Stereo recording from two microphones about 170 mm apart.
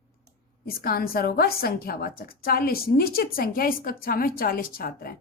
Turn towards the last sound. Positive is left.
turn(degrees=60)  # may be behind; listen again after turning